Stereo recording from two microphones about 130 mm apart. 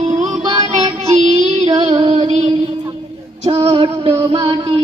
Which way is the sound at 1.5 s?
40° right (ahead or behind).